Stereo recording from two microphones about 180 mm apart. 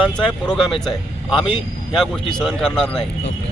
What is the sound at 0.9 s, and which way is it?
Speech, 30° left (ahead or behind).